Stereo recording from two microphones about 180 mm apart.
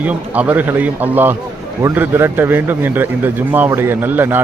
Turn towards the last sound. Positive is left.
turn(degrees=-10)  # may be behind; listen again after turning